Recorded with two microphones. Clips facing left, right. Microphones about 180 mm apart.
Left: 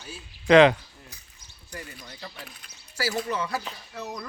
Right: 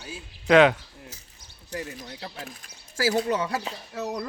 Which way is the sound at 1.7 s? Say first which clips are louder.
Right 7 dB; 80° right.